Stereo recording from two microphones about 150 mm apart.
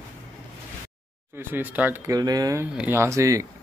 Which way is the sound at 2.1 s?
25° right (ahead or behind).